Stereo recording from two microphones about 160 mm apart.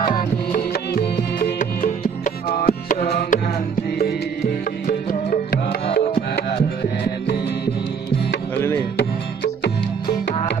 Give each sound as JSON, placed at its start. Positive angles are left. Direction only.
{"t": 0.1, "sound": "music", "side_deg": 60}
{"t": 8.5, "sound": "music", "side_deg": 15}
{"t": 8.9, "sound": "music", "side_deg": 90}